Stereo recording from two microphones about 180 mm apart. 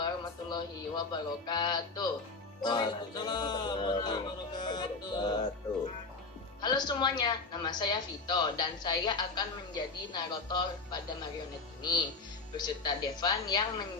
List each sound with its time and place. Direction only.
0.5 s speech: 25° left (ahead or behind)
6.6 s speech: 25° left (ahead or behind)